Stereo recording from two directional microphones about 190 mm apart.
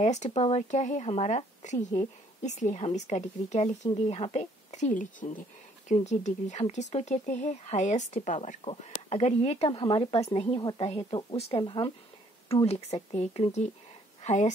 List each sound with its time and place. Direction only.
0.0 s a woman's voice: 35° left (ahead or behind)